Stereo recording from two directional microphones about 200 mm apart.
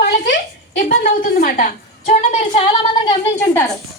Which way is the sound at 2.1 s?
30° left (ahead or behind).